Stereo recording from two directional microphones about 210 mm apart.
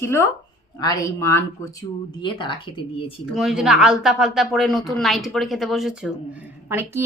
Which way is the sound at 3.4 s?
Centre (ahead or behind).